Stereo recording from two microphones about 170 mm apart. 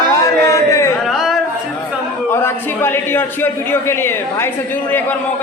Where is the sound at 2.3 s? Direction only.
15° left (ahead or behind).